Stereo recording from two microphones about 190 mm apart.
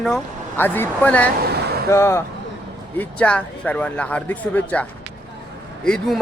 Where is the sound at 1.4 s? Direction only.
55° right (ahead or behind).